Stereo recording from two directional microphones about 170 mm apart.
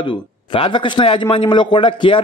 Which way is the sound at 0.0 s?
30° left (ahead or behind).